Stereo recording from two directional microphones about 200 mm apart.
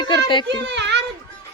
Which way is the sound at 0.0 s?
25° left (ahead or behind).